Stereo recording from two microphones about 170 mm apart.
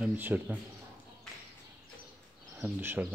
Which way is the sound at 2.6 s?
10° right (ahead or behind).